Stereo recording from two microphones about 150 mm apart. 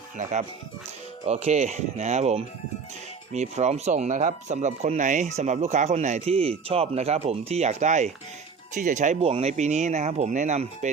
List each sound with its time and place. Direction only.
0.2 s speech: 50° right (ahead or behind)